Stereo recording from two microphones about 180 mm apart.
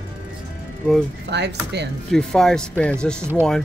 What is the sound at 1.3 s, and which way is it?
Speech, 70° right (ahead or behind).